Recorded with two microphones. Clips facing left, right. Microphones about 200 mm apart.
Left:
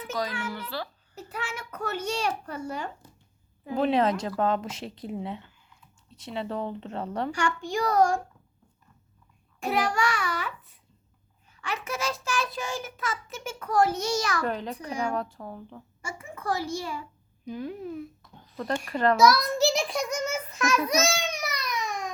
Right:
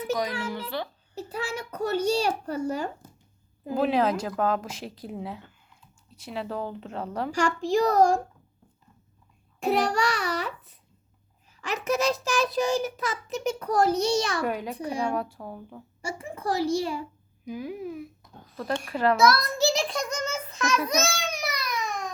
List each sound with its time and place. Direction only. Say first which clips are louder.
0.0 s a sound: right 4 dB; 15° right (ahead or behind)
0.7 s a child's voice: right 3 dB; 20° right (ahead or behind)
1.1 s a child's voice: right 5 dB; 30° right (ahead or behind)
3.7 s a child's voice: even; 5° right (ahead or behind)
7.9 s a child's voice: even; 35° right (ahead or behind)
9.6 s a child's voice: right 2 dB; 35° right (ahead or behind)
14.4 s a woman's voice: right 2 dB; 10° right (ahead or behind)
16.0 s a child's voice: right 5 dB; 35° right (ahead or behind)
17.4 s a child's voice: right 1 dB; 10° right (ahead or behind)